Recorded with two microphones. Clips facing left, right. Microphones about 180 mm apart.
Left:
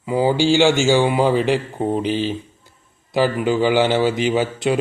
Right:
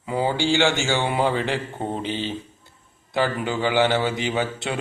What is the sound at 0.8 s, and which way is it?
Mantra, 15° left (ahead or behind).